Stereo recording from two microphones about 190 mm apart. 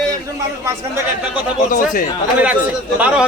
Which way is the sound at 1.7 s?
45° left (ahead or behind).